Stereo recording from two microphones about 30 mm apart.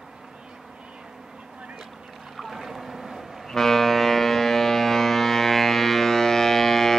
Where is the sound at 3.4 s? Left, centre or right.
Centre.